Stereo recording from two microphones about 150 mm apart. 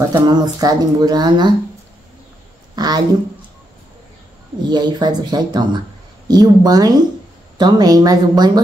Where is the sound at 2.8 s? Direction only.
25° right (ahead or behind).